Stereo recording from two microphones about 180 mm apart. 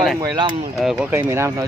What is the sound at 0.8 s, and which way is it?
Speech, 5° right (ahead or behind).